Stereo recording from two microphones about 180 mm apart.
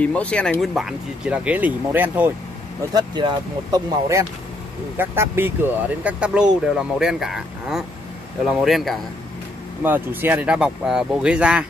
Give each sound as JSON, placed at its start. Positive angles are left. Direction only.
{"t": 0.0, "sound": "speech", "side_deg": 5}
{"t": 2.9, "sound": "speech", "side_deg": -25}
{"t": 9.8, "sound": "speech", "side_deg": -10}